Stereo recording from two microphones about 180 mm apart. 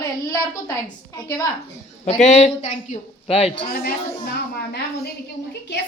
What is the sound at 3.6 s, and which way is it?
A woman's voice, 60° left (ahead or behind).